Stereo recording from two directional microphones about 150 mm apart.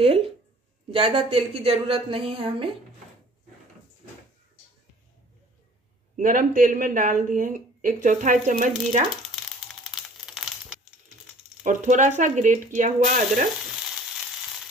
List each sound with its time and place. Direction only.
0.0 s a sound: 40° right (ahead or behind)
0.9 s a woman's voice: 35° right (ahead or behind)
6.1 s speech: 60° right (ahead or behind)
9.3 s crumpling: centre (ahead or behind)
11.6 s speech: 55° right (ahead or behind)